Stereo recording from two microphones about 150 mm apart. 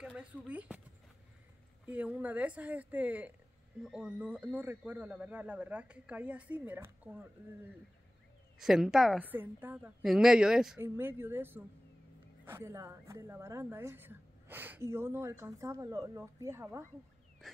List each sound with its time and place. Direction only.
0.0 s a sound: 5° right (ahead or behind)
0.5 s speech: 10° right (ahead or behind)
1.9 s speech: 10° right (ahead or behind)
8.5 s a woman's voice: 5° right (ahead or behind)
9.2 s a woman's voice: 10° right (ahead or behind)
10.8 s speech: 15° right (ahead or behind)